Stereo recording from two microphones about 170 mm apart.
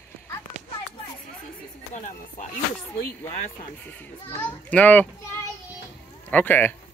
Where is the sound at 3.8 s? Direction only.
10° left (ahead or behind).